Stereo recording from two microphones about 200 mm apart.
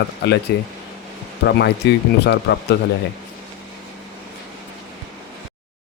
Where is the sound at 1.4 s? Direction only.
60° left (ahead or behind).